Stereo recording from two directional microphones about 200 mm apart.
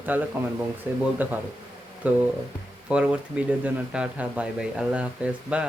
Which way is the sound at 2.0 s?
10° right (ahead or behind).